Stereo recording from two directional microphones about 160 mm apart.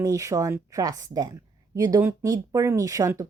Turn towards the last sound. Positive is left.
turn(degrees=-20)  # may be behind; listen again after turning